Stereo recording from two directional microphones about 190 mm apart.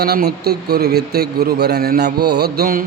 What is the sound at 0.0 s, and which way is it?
A man's voice, 55° right (ahead or behind).